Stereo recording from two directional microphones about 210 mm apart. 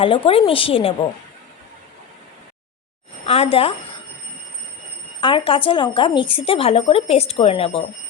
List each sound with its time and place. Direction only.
0.0 s speech: 25° left (ahead or behind)
3.2 s speech: 30° left (ahead or behind)
5.2 s speech: 25° left (ahead or behind)